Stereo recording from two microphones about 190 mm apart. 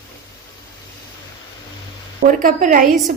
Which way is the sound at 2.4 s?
45° right (ahead or behind).